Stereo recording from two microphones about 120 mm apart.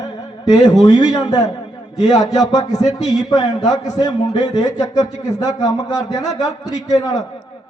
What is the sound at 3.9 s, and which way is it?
Speech, 35° left (ahead or behind).